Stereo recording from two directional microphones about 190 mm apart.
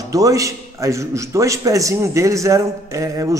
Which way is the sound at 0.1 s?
15° right (ahead or behind).